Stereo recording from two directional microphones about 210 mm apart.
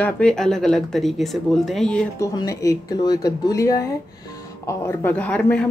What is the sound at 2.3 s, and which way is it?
Speech, 15° left (ahead or behind).